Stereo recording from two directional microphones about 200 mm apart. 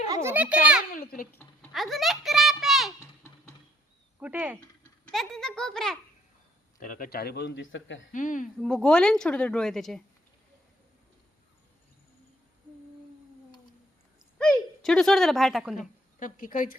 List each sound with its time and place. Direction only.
0.1 s a child's voice: 15° right (ahead or behind)
1.7 s a sound: centre (ahead or behind)
4.2 s a woman's voice: 5° right (ahead or behind)
6.7 s a man's voice: 40° left (ahead or behind); by 8.0 s 70° left (ahead or behind)
8.1 s speech: 40° left (ahead or behind)
8.6 s a woman's voice: 5° left (ahead or behind)
14.3 s speech: 5° left (ahead or behind)
15.8 s a woman's voice: 40° left (ahead or behind)